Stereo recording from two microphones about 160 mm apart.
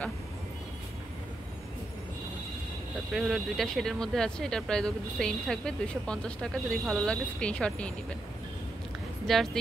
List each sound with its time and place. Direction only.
3.1 s speech: centre (ahead or behind)
9.3 s speech: centre (ahead or behind)